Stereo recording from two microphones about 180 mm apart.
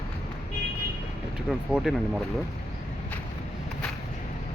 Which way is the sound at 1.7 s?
5° right (ahead or behind).